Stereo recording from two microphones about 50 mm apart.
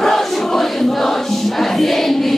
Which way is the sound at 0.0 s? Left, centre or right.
Centre.